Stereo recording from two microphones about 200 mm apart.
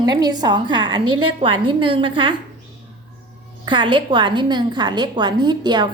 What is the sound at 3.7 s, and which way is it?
A woman's voice, 25° right (ahead or behind).